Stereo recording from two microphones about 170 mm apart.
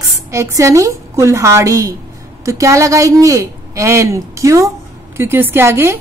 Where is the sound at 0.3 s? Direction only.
15° right (ahead or behind).